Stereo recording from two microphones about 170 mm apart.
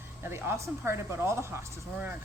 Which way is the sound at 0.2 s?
15° right (ahead or behind).